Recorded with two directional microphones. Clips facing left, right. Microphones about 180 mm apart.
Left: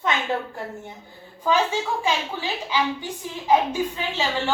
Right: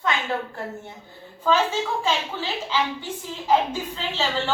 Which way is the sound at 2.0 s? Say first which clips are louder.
Even; 10° left (ahead or behind).